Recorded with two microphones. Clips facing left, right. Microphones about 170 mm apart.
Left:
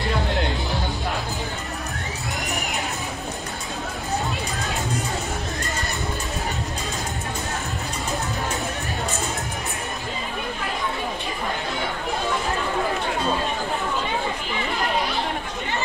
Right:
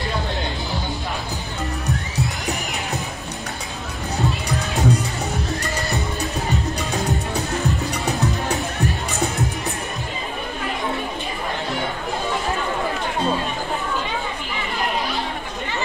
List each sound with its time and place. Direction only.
4.6 s music: 35° right (ahead or behind)